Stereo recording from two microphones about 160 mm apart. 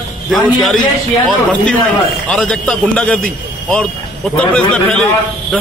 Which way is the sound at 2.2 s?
5° left (ahead or behind).